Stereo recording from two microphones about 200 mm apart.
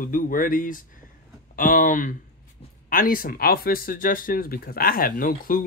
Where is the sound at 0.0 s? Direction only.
45° left (ahead or behind).